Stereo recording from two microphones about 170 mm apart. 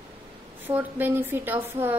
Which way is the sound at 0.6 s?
10° right (ahead or behind).